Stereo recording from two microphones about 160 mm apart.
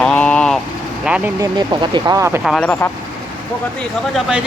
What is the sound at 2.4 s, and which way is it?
Speech, 5° left (ahead or behind).